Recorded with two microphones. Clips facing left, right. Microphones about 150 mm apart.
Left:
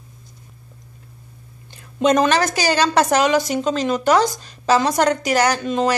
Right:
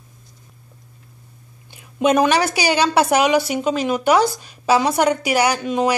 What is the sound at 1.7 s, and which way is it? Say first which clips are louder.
A woman's voice: even; 10° right (ahead or behind).